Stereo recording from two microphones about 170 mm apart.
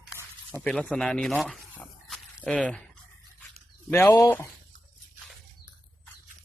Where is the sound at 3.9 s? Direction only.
10° left (ahead or behind).